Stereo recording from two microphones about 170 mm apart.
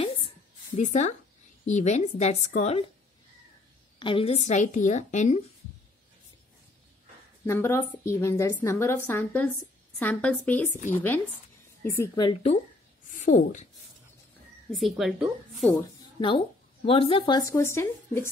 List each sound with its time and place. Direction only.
0.7 s a woman's voice: 45° left (ahead or behind)
4.0 s a woman's voice: 30° left (ahead or behind)
7.4 s a woman's voice: 15° left (ahead or behind)
13.0 s a sound: 50° left (ahead or behind)
14.7 s speech: centre (ahead or behind)
15.7 s speech: 30° left (ahead or behind)
17.4 s a woman's voice: 15° left (ahead or behind)